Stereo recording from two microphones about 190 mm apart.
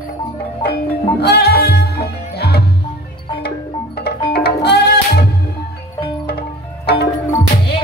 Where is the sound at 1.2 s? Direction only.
60° left (ahead or behind).